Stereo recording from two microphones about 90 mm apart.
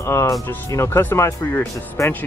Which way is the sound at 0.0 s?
30° left (ahead or behind).